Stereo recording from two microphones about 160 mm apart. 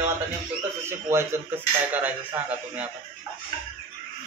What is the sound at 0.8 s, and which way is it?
Speech, 15° right (ahead or behind).